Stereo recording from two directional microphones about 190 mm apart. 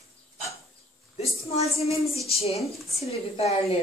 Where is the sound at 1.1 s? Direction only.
35° left (ahead or behind).